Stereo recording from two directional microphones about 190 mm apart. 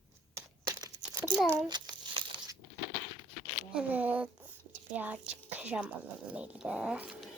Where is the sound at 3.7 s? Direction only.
10° right (ahead or behind).